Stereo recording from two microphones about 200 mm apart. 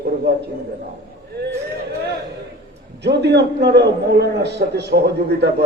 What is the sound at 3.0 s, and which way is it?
A man's voice, 60° right (ahead or behind).